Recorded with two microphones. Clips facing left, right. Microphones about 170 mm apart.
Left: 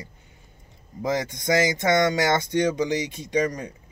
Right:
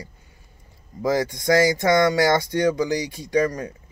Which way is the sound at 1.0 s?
20° left (ahead or behind).